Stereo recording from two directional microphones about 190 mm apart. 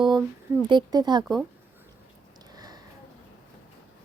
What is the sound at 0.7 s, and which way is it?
Speech, 20° right (ahead or behind).